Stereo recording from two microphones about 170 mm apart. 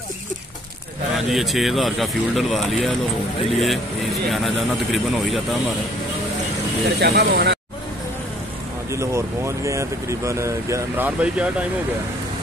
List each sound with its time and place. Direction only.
1.1 s speech: centre (ahead or behind)
7.0 s speech: 75° right (ahead or behind)
8.9 s speech: 15° right (ahead or behind)